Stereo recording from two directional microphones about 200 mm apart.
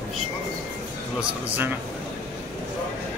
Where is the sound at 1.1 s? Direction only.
10° right (ahead or behind).